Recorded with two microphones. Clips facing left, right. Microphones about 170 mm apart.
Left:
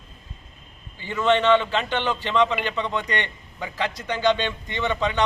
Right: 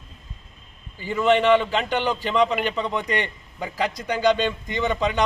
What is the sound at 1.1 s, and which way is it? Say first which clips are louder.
A man's voice: right 1 dB; 15° right (ahead or behind).